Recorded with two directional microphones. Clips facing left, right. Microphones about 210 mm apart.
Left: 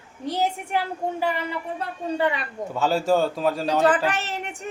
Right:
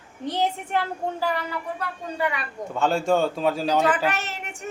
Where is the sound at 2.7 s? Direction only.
5° left (ahead or behind).